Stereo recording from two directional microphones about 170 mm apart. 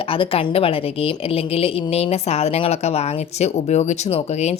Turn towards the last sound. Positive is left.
turn(degrees=40)  # may be behind; listen again after turning